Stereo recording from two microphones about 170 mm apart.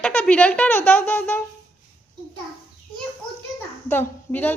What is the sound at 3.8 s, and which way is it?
Speech, 15° left (ahead or behind).